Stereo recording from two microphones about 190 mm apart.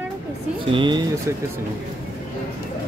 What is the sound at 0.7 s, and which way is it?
Speech, 25° right (ahead or behind).